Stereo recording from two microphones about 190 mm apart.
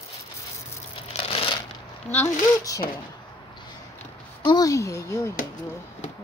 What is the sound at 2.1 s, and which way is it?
Speech, 15° left (ahead or behind).